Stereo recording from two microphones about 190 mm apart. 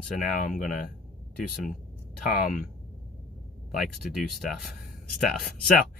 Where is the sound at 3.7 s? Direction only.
Centre (ahead or behind).